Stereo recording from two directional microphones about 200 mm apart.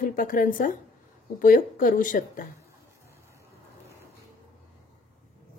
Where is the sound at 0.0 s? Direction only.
45° left (ahead or behind).